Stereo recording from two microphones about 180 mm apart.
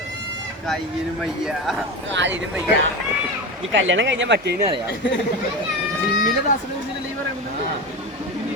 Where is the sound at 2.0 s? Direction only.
90° right.